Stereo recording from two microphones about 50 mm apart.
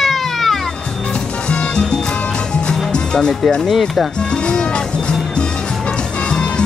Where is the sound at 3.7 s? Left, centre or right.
Centre.